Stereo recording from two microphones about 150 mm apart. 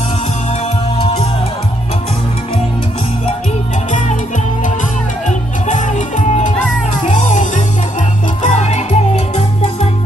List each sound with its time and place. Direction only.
5.7 s music: 55° left (ahead or behind)